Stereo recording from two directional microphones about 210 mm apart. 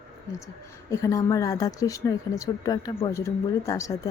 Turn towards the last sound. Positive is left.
turn(degrees=15)  # may be behind; listen again after turning